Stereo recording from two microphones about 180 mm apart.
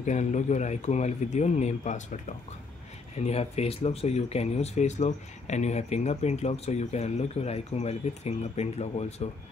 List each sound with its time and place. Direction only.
0.0 s speech: 40° left (ahead or behind)
3.2 s speech: 35° left (ahead or behind)